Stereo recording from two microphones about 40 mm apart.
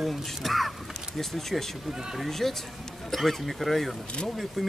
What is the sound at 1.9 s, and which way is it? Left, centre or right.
Speech, centre.